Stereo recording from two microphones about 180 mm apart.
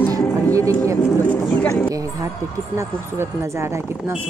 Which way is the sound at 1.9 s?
20° right (ahead or behind).